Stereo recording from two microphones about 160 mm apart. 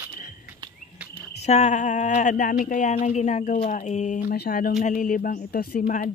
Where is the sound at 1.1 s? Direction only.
45° left (ahead or behind); by 5.4 s 60° left (ahead or behind).